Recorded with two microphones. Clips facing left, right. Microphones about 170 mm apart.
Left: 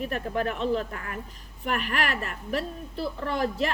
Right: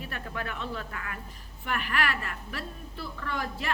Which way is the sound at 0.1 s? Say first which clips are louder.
Left 8 dB; 35° left (ahead or behind).